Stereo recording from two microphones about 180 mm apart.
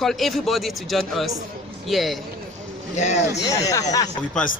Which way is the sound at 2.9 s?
40° left (ahead or behind).